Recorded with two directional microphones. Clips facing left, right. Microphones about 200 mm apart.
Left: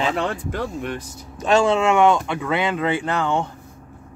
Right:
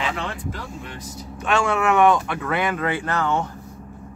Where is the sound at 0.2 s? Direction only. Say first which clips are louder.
Left 6 dB; 60° left (ahead or behind).